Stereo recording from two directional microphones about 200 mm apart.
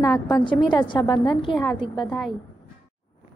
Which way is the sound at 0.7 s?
20° left (ahead or behind).